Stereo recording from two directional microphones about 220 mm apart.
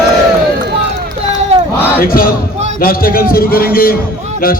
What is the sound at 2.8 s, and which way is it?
A man's voice, 40° left (ahead or behind).